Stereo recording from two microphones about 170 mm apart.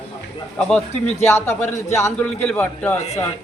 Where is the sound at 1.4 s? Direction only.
15° left (ahead or behind).